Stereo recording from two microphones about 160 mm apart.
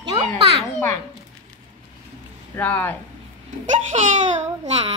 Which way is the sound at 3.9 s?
45° right (ahead or behind).